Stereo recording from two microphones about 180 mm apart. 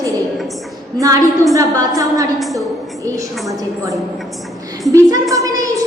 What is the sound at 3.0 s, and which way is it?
Speech, 15° right (ahead or behind).